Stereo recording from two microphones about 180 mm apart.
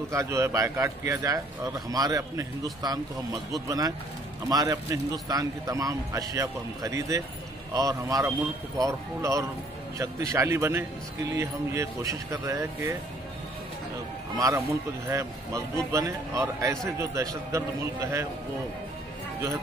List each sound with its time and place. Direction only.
0.1 s a man's voice: 15° right (ahead or behind)
14.3 s a man's voice: 20° right (ahead or behind)